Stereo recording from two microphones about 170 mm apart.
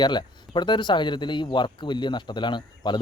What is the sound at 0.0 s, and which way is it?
Speech, 25° left (ahead or behind).